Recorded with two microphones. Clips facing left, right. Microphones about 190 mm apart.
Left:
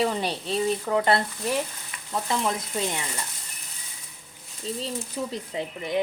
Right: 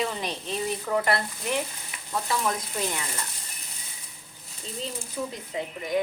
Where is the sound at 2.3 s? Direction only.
20° left (ahead or behind).